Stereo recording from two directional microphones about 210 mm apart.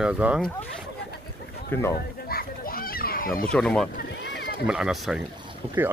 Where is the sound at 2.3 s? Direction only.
45° left (ahead or behind).